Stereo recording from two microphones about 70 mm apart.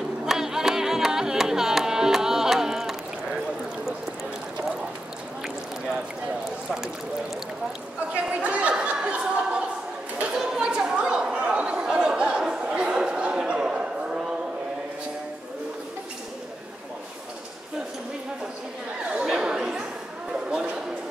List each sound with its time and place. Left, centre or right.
0.2 s music: centre
8.3 s chatter: centre
19.1 s chatter: centre
20.4 s a sound: centre